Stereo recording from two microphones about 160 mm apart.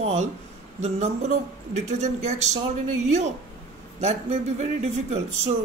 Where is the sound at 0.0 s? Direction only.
45° right (ahead or behind).